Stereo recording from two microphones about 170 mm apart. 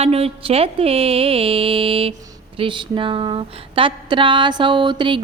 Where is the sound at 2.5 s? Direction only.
30° right (ahead or behind).